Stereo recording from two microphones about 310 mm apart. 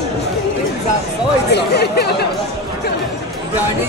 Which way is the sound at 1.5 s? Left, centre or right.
Left.